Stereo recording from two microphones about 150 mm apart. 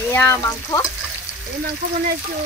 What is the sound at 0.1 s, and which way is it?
Frying, 20° left (ahead or behind).